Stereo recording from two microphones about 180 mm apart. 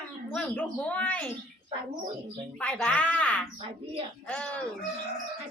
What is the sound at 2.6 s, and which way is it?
A woman's voice, 5° left (ahead or behind).